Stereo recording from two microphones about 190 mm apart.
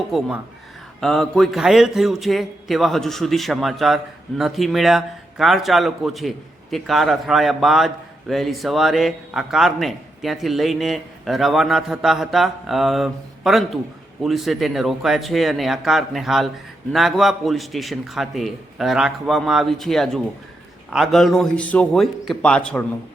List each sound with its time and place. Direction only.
0.1 s a man's voice: 5° right (ahead or behind)